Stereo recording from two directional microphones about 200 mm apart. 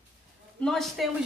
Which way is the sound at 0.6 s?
Centre (ahead or behind).